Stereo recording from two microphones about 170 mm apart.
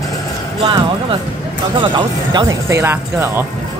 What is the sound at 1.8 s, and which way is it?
Speech, 30° right (ahead or behind).